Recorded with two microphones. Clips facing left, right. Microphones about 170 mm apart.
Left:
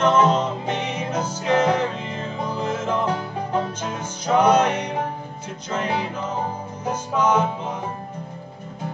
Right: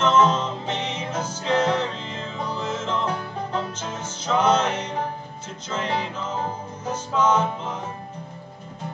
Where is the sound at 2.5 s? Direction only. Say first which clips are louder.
Left 4 dB; 10° left (ahead or behind).